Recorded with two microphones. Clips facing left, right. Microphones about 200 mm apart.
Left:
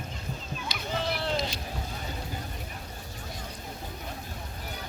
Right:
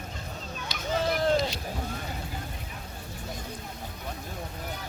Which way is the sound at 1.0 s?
45° right (ahead or behind).